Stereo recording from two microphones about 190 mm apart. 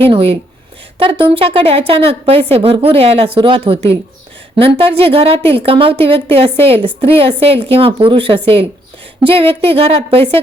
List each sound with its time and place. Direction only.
0.0 s a woman's voice: 30° right (ahead or behind)